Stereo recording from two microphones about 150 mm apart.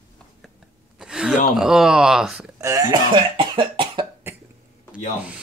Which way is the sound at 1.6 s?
5° right (ahead or behind).